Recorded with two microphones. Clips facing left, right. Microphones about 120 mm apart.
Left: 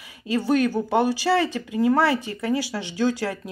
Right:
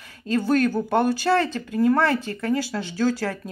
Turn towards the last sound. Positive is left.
turn(degrees=15)  # may be behind; listen again after turning